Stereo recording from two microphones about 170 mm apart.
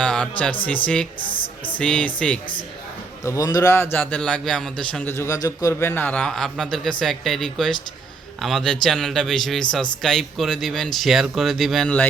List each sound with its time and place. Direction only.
0.0 s speech: 5° left (ahead or behind)
1.3 s speech: 30° left (ahead or behind)
1.8 s a man's voice: 5° left (ahead or behind)
3.2 s a man's voice: 20° left (ahead or behind); by 12.0 s 5° left (ahead or behind)